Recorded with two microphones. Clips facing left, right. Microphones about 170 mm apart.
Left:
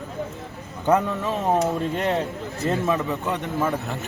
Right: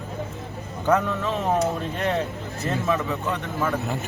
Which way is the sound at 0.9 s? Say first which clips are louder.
Left 1 dB; 15° left (ahead or behind).